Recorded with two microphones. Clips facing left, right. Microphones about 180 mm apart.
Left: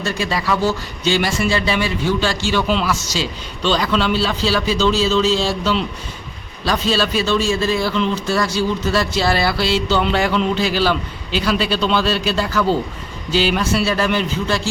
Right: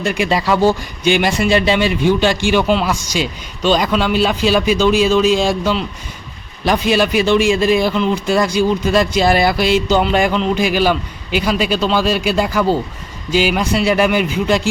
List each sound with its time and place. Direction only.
0.0 s a man's voice: 15° right (ahead or behind)